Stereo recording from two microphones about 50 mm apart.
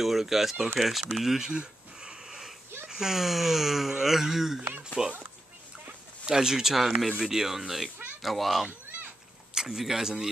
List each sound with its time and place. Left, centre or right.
0.0 s speech: centre
1.5 s wheeze: centre
2.9 s speech: centre
6.2 s speech: centre